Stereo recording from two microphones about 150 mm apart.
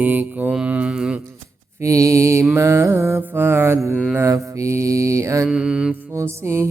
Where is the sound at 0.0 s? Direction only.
10° right (ahead or behind).